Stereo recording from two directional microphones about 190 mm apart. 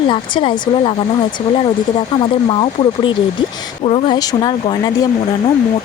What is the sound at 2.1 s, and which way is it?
Speech, 25° left (ahead or behind).